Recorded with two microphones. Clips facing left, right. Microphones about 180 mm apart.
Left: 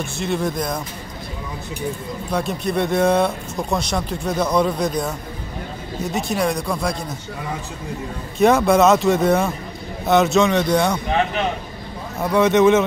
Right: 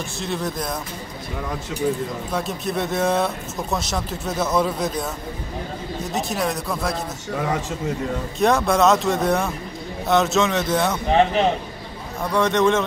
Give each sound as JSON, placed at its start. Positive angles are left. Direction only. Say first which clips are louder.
{"t": 0.2, "sound": "speech", "louder": "left 4 dB", "side_deg": 0}
{"t": 2.3, "sound": "speech", "louder": "left 4 dB", "side_deg": 0}
{"t": 6.1, "sound": "speech", "louder": "left 3 dB", "side_deg": 0}
{"t": 7.3, "sound": "a man's voice", "louder": "right 7 dB", "side_deg": -75}
{"t": 8.4, "sound": "speech", "louder": "left 4 dB", "side_deg": 0}
{"t": 11.1, "sound": "a man's voice", "louder": "right 3 dB", "side_deg": -30}
{"t": 12.2, "sound": "speech", "louder": "left 4 dB", "side_deg": 5}